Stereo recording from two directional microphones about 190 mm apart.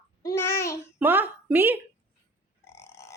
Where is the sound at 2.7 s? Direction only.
15° left (ahead or behind).